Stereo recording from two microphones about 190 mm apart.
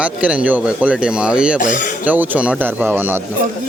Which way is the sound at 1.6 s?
45° left (ahead or behind).